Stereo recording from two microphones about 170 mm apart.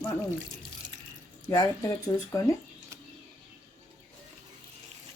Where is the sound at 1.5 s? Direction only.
20° left (ahead or behind).